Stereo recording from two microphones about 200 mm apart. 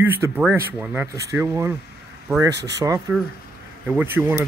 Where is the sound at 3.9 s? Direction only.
10° right (ahead or behind).